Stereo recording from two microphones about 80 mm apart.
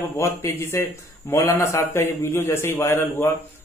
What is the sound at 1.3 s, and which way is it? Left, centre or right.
A man's voice, left.